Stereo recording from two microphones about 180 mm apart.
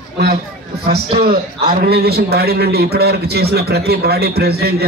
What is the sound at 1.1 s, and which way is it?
A man's voice, 60° right (ahead or behind).